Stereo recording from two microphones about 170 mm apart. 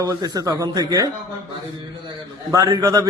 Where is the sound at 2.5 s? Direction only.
25° right (ahead or behind).